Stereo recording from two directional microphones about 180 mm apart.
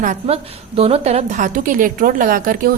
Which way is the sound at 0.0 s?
45° right (ahead or behind).